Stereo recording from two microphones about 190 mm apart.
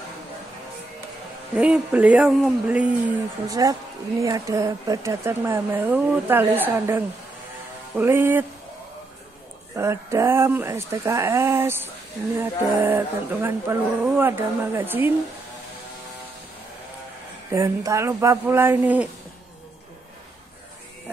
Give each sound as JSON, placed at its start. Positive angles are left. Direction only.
{"t": 1.6, "sound": "speech", "side_deg": -5}
{"t": 3.4, "sound": "speech", "side_deg": -20}
{"t": 9.8, "sound": "speech", "side_deg": -15}
{"t": 17.5, "sound": "speech", "side_deg": -15}